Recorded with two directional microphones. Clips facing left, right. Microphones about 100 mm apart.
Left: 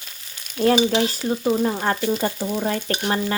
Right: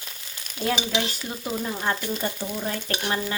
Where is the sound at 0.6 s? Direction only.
45° left (ahead or behind).